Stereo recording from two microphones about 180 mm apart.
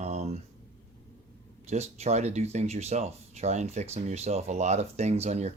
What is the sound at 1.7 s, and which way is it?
Speech, 40° right (ahead or behind).